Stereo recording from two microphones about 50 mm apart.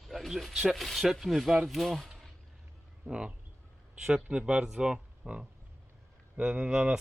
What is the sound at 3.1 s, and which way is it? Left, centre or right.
Speech, centre.